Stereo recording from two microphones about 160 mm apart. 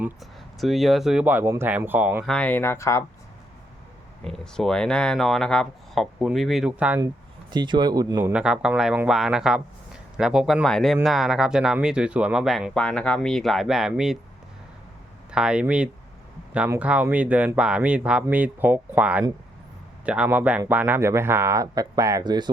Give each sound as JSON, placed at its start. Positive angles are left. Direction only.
{"t": 0.2, "sound": "speech", "side_deg": 0}
{"t": 2.2, "sound": "speech", "side_deg": 5}
{"t": 4.2, "sound": "speech", "side_deg": 5}
{"t": 7.5, "sound": "speech", "side_deg": -25}
{"t": 8.2, "sound": "speech", "side_deg": -5}
{"t": 15.3, "sound": "speech", "side_deg": -5}